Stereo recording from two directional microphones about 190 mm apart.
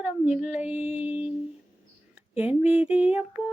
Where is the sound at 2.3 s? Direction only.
10° right (ahead or behind).